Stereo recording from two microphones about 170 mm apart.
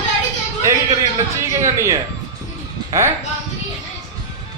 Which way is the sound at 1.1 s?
15° right (ahead or behind).